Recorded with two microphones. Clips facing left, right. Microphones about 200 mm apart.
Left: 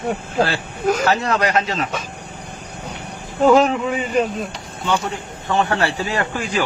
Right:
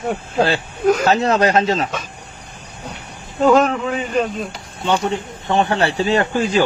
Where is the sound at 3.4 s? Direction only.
10° left (ahead or behind).